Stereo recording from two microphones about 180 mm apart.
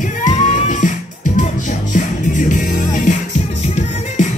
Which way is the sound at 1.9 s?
45° left (ahead or behind).